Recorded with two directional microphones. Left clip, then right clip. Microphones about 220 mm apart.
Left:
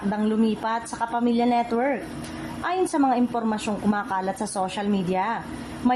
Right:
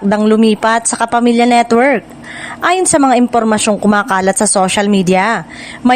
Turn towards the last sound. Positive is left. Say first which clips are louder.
# right 12 dB
turn(degrees=-45)  # may be behind; listen again after turning